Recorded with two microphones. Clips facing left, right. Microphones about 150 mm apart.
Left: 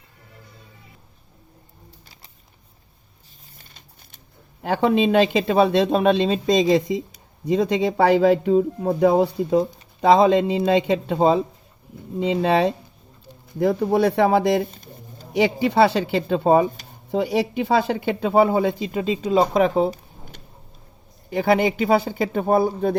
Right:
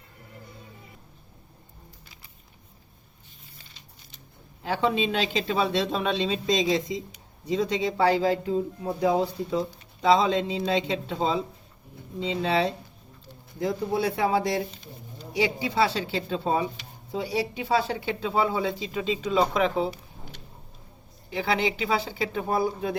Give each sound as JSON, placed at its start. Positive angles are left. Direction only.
{"t": 3.6, "sound": "a sound", "side_deg": 50}
{"t": 4.6, "sound": "speech", "side_deg": 55}
{"t": 12.4, "sound": "speech", "side_deg": 55}
{"t": 15.4, "sound": "speech", "side_deg": 60}
{"t": 19.8, "sound": "a sound", "side_deg": 45}
{"t": 21.2, "sound": "speech", "side_deg": 50}